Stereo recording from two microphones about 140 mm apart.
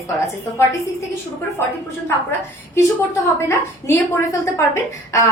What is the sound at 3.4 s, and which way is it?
A woman's voice, 20° left (ahead or behind).